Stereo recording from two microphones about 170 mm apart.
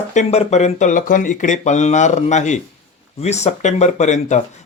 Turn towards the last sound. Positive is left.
turn(degrees=45)  # may be behind; listen again after turning